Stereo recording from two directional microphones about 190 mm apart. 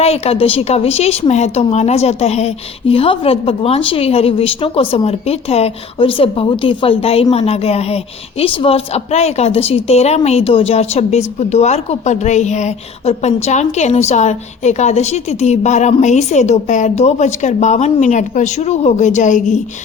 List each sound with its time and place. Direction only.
0.0 s a woman's voice: 30° left (ahead or behind)